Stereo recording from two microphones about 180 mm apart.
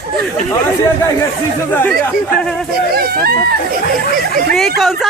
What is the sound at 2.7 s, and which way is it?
Speech, 60° right (ahead or behind).